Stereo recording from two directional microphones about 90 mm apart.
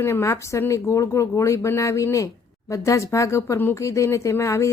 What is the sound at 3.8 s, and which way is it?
Speech, 35° left (ahead or behind).